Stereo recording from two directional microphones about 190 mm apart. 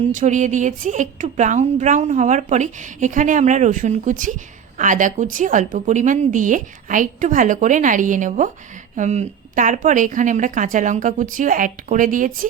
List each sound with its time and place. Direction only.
0.1 s a woman's voice: 40° right (ahead or behind)